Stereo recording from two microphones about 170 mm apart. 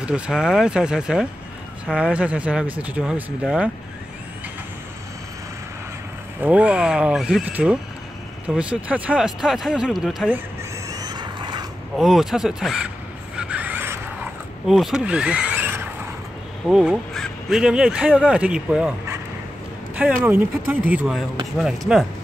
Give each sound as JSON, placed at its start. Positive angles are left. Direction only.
{"t": 0.0, "sound": "speech", "side_deg": -5}
{"t": 6.4, "sound": "speech", "side_deg": -10}
{"t": 10.9, "sound": "vehicle", "side_deg": -20}
{"t": 12.0, "sound": "speech", "side_deg": 0}
{"t": 13.4, "sound": "a sound", "side_deg": -10}
{"t": 14.7, "sound": "speech", "side_deg": 0}